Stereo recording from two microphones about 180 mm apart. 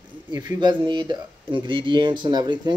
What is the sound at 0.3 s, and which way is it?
Speech, 25° right (ahead or behind).